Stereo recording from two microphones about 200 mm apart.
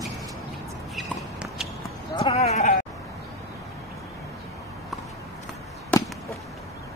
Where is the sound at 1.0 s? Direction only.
Centre (ahead or behind).